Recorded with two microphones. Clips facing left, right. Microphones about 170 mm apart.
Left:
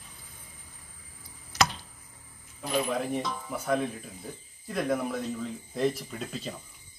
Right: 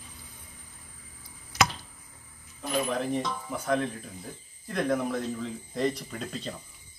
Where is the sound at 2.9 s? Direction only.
5° left (ahead or behind).